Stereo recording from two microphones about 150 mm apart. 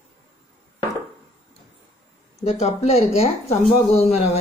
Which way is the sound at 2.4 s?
45° left (ahead or behind).